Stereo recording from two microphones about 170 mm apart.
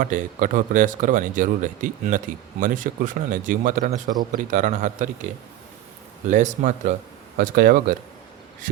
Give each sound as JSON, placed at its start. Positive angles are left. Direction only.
{"t": 0.0, "sound": "speech", "side_deg": -50}
{"t": 6.3, "sound": "speech", "side_deg": -45}
{"t": 7.3, "sound": "speech", "side_deg": -55}